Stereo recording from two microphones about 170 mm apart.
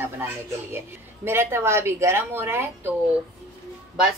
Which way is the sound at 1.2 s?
15° right (ahead or behind).